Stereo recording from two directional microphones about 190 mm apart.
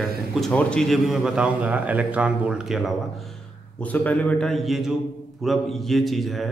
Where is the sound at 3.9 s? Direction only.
5° left (ahead or behind).